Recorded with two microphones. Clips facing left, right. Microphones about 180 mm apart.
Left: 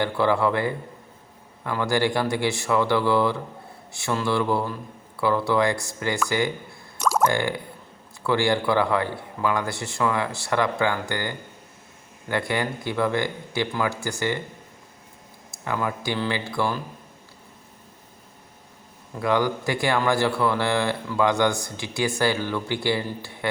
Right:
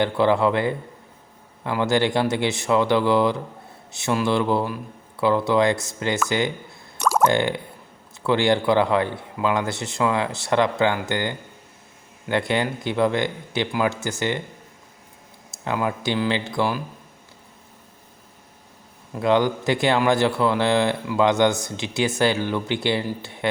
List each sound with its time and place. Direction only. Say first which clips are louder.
0.0 s speech: right 3 dB; 20° right (ahead or behind)
15.6 s speech: right 3 dB; 20° right (ahead or behind)
19.2 s speech: right 3 dB; 20° right (ahead or behind)